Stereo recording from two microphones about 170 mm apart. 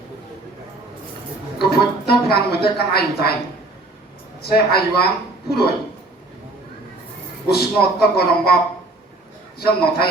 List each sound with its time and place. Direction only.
1.5 s a sound: 65° left (ahead or behind)
2.3 s a woman's voice: 70° left (ahead or behind)
4.4 s a woman's voice: 65° left (ahead or behind)
7.4 s speech: 65° left (ahead or behind)
9.6 s speech: 65° left (ahead or behind)